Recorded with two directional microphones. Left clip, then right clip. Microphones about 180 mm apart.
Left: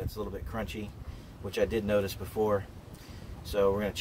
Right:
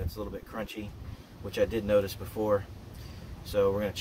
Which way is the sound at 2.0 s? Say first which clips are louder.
Left 2 dB; 25° left (ahead or behind).